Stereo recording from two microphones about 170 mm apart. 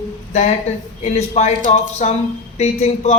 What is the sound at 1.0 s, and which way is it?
A man's voice, 40° left (ahead or behind).